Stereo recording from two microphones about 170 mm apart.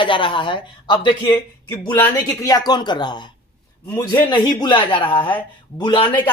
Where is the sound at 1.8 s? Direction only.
10° left (ahead or behind).